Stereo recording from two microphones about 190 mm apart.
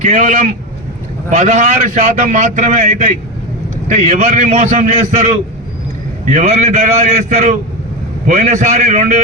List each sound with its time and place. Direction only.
0.0 s a man's voice: 40° right (ahead or behind)